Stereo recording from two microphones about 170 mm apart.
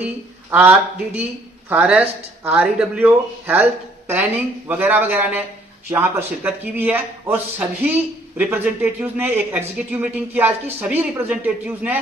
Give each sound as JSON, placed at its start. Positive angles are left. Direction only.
{"t": 0.0, "sound": "a man's voice", "side_deg": -10}